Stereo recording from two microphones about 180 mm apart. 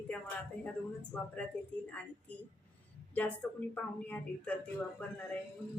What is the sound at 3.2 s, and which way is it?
A woman's voice, 10° left (ahead or behind).